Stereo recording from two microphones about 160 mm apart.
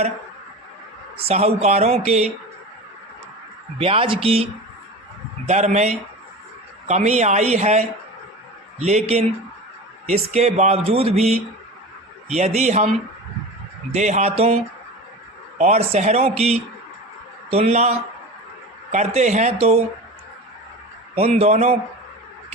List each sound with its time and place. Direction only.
1.1 s speech: 40° right (ahead or behind)
3.8 s speech: 35° right (ahead or behind)
5.5 s speech: 45° right (ahead or behind)
13.9 s speech: 45° right (ahead or behind)
21.2 s speech: 40° right (ahead or behind)